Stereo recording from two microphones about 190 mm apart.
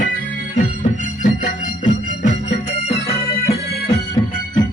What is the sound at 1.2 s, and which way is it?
Music, 40° left (ahead or behind).